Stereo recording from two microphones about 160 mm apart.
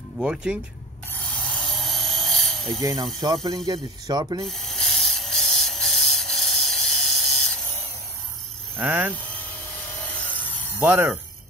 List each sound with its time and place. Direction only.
0.2 s speech: 5° right (ahead or behind)
1.1 s a sound: 10° left (ahead or behind)
2.8 s mechanisms: 20° right (ahead or behind)
4.5 s a sound: centre (ahead or behind)
8.7 s speech: 10° right (ahead or behind)
9.9 s wood: 10° left (ahead or behind)
10.8 s speech: 10° right (ahead or behind)